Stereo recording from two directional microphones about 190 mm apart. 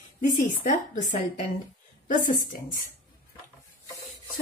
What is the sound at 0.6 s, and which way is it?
A woman's voice, 40° left (ahead or behind).